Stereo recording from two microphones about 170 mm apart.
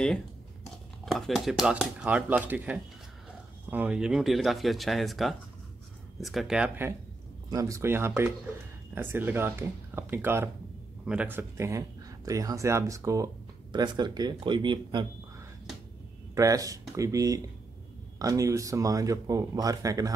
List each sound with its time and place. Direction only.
1.0 s speech: centre (ahead or behind)
7.5 s speech: 20° right (ahead or behind)
16.3 s speech: 20° right (ahead or behind)